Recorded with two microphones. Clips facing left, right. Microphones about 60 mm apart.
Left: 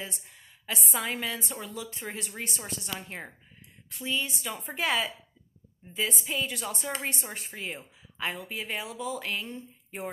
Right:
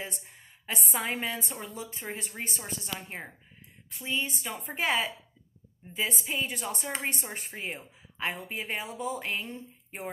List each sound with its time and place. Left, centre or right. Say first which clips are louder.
0.0 s a woman's voice: right 1 dB; right
3.1 s speech: even; centre
4.0 s a woman's voice: left 1 dB; right